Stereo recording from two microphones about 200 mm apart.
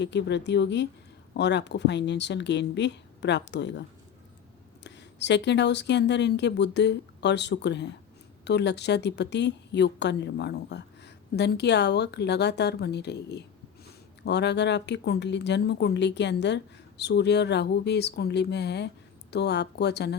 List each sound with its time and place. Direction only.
0.0 s a woman's voice: 60° left (ahead or behind)